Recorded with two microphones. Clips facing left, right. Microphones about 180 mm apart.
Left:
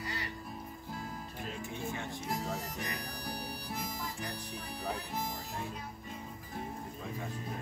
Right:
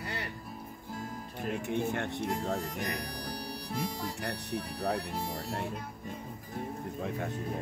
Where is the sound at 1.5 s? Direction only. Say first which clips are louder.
Right 9 dB; 70° right (ahead or behind).